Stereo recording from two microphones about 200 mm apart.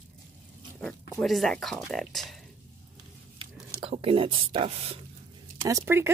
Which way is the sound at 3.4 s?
30° right (ahead or behind).